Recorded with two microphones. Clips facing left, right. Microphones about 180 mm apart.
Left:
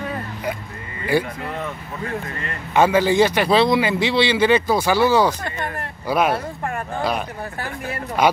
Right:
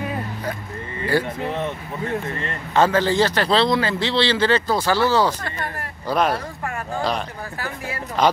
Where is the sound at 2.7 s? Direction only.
10° left (ahead or behind).